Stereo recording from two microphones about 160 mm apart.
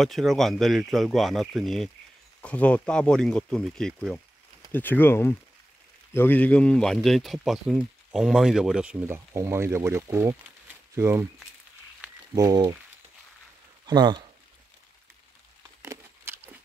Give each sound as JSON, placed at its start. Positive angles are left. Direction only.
{"t": 0.0, "sound": "speech", "side_deg": 0}
{"t": 9.0, "sound": "speech", "side_deg": -15}
{"t": 12.4, "sound": "speech", "side_deg": -25}
{"t": 13.8, "sound": "speech", "side_deg": -25}
{"t": 15.8, "sound": "a sound", "side_deg": -15}